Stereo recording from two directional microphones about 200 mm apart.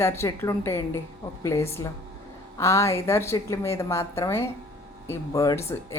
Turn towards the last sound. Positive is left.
turn(degrees=15)  # may be behind; listen again after turning